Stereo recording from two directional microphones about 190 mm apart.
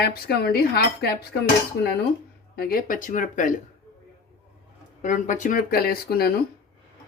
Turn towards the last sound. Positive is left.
turn(degrees=50)  # may be behind; listen again after turning